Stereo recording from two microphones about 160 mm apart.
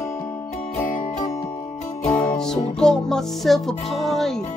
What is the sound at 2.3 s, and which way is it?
Music, 5° left (ahead or behind).